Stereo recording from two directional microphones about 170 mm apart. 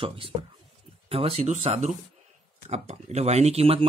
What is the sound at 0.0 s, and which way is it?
Speech, 30° right (ahead or behind).